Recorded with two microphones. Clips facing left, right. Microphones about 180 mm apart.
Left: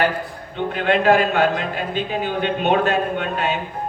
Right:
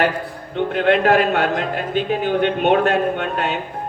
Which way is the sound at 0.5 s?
60° right (ahead or behind).